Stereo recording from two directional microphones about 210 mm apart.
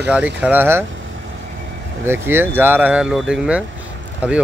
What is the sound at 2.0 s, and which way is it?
Speech, 10° right (ahead or behind).